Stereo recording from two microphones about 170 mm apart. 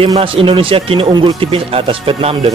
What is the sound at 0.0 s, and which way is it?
Speech, 30° right (ahead or behind).